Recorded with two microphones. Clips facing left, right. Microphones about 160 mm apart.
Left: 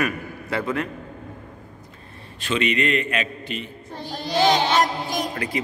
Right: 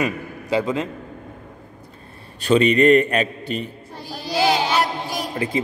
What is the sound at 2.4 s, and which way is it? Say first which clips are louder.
A man's voice: right 8 dB; 35° right (ahead or behind).